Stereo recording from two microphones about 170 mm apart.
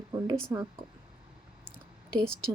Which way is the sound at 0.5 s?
15° right (ahead or behind).